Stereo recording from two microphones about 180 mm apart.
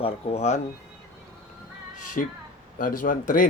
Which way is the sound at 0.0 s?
35° left (ahead or behind).